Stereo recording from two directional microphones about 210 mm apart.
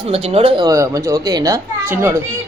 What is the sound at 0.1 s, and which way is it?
Speech, 25° right (ahead or behind).